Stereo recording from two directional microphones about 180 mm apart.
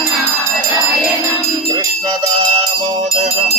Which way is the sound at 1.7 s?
25° right (ahead or behind).